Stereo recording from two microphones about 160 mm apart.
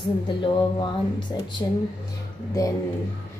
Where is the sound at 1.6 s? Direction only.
20° left (ahead or behind).